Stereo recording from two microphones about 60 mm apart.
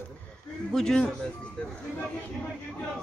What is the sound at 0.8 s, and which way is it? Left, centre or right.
Speech, centre.